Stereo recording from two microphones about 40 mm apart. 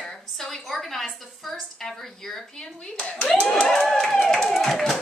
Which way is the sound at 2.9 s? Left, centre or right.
Left.